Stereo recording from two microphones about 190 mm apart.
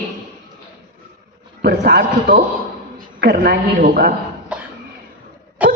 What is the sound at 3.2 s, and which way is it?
Speech, 50° right (ahead or behind).